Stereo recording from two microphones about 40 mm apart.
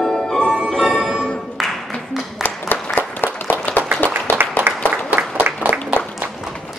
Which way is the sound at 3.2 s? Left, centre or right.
Left.